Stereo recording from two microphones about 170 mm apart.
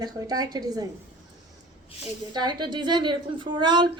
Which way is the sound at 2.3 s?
25° right (ahead or behind).